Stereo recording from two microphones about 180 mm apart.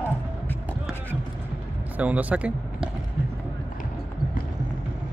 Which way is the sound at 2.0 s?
10° right (ahead or behind).